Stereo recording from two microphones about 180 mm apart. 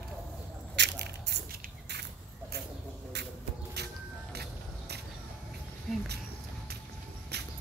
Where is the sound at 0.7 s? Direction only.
70° right (ahead or behind).